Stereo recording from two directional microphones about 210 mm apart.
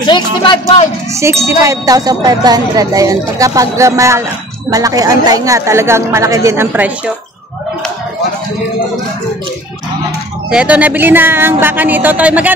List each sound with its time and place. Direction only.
0.0 s speech: 20° left (ahead or behind)
1.2 s speech: 15° right (ahead or behind)
10.5 s speech: 5° right (ahead or behind)